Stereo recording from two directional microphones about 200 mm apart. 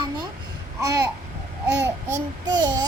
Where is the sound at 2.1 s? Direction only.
20° right (ahead or behind).